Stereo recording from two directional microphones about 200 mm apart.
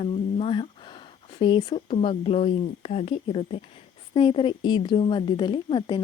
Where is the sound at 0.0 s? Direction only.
30° left (ahead or behind).